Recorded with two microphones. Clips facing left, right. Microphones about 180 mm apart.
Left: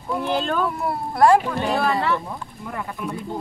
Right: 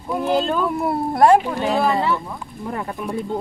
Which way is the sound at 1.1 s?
20° right (ahead or behind).